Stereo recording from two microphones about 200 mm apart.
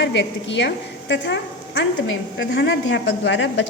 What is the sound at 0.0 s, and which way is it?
A woman's voice, 60° left (ahead or behind).